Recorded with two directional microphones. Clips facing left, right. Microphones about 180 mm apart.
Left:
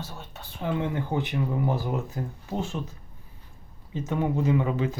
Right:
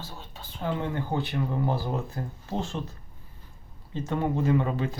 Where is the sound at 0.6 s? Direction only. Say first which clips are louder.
Left 2 dB; 20° left (ahead or behind).